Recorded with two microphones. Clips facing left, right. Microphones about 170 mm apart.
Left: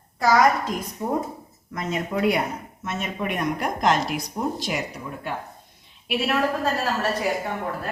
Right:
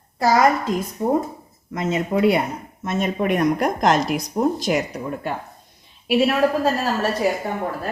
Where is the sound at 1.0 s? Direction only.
35° right (ahead or behind).